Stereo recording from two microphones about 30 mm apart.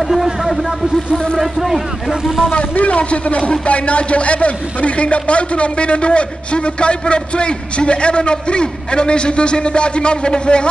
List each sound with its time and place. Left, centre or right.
0.1 s speech: centre
2.8 s speech: left